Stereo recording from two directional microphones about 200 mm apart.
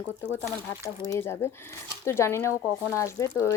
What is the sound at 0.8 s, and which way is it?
A woman's voice, 15° left (ahead or behind).